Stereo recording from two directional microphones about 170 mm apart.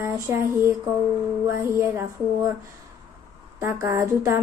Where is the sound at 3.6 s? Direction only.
15° right (ahead or behind).